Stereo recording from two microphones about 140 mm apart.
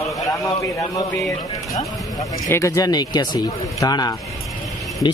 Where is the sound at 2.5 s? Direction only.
20° left (ahead or behind).